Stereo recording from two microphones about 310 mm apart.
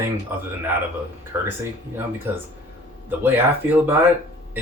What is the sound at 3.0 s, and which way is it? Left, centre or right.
Speech, centre.